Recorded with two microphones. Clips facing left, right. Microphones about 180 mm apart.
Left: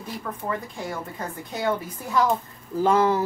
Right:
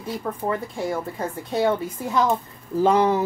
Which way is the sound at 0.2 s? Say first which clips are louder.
Right 3 dB; 30° right (ahead or behind).